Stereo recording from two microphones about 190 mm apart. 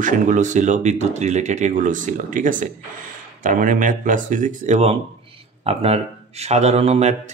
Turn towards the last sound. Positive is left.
turn(degrees=-35)  # may be behind; listen again after turning